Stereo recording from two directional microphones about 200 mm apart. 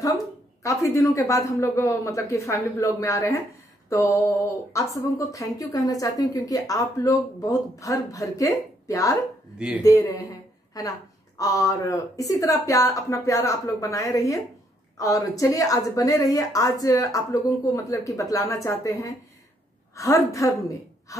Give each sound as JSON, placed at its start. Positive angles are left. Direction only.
{"t": 0.0, "sound": "speech", "side_deg": 15}
{"t": 11.3, "sound": "a woman's voice", "side_deg": 15}